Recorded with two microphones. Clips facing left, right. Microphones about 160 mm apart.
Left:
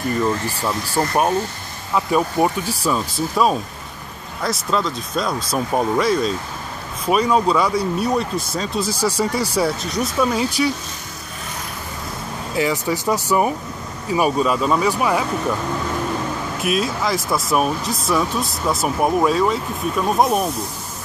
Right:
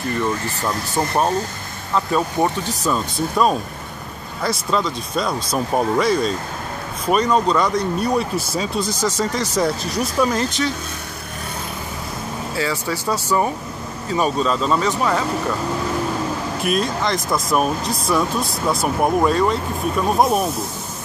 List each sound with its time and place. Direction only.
0.2 s speech: 5° left (ahead or behind)
12.5 s speech: 15° left (ahead or behind)
16.6 s speech: 5° left (ahead or behind)